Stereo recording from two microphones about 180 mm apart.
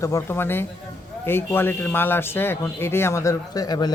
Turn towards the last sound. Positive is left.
turn(degrees=20)  # may be behind; listen again after turning